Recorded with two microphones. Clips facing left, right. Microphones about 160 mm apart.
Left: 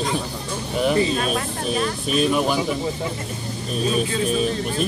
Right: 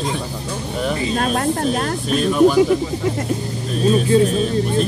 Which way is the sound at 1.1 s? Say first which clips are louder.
Right 5 dB; 55° right (ahead or behind).